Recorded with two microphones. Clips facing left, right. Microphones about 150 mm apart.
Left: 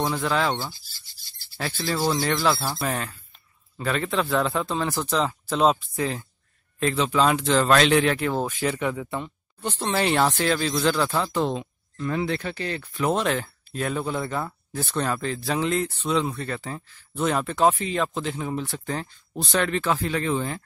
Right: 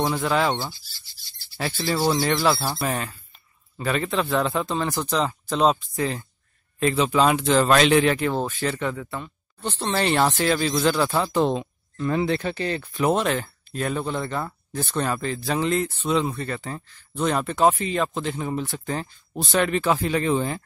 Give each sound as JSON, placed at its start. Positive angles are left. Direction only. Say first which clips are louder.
{"t": 0.0, "sound": "speech", "louder": "right 2 dB", "side_deg": -5}
{"t": 8.5, "sound": "speech", "louder": "left 1 dB", "side_deg": 10}
{"t": 13.1, "sound": "speech", "louder": "left 1 dB", "side_deg": 0}